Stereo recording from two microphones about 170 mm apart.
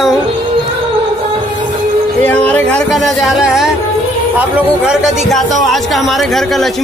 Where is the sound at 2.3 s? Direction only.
10° left (ahead or behind).